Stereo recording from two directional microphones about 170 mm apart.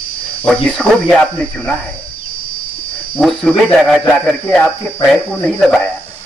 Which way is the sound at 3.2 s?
Centre (ahead or behind).